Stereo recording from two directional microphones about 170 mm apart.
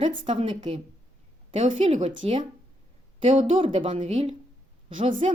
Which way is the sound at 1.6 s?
40° right (ahead or behind).